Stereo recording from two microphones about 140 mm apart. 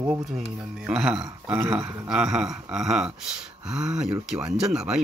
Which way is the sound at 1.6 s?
20° right (ahead or behind).